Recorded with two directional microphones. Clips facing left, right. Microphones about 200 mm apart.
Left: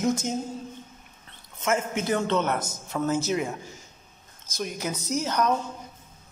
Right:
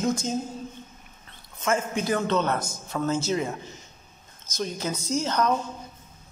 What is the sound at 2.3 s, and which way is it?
A woman's voice, 10° left (ahead or behind).